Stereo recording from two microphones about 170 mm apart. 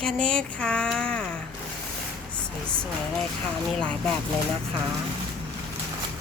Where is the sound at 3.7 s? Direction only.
5° left (ahead or behind).